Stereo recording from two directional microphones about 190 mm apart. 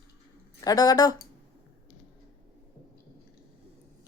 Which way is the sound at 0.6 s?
20° left (ahead or behind).